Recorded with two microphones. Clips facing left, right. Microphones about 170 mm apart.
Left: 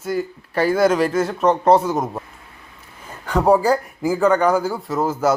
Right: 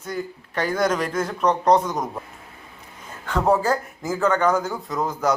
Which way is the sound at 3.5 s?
10° left (ahead or behind).